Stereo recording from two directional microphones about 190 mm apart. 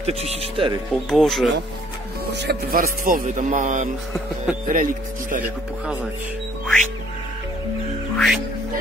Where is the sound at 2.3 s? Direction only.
55° right (ahead or behind).